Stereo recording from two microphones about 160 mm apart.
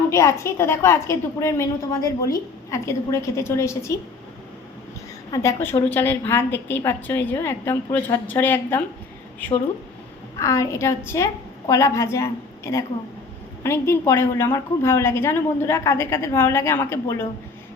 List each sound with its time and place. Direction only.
0.1 s a woman's voice: 20° left (ahead or behind)
5.3 s a woman's voice: 15° left (ahead or behind)